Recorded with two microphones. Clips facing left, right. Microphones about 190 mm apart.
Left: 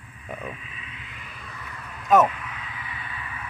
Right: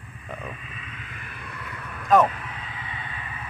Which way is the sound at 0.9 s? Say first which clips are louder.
Right 2 dB; 50° right (ahead or behind).